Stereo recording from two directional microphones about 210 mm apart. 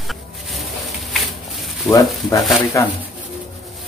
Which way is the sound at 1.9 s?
Centre (ahead or behind).